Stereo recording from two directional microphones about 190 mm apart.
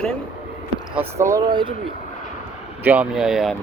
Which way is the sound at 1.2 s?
20° right (ahead or behind).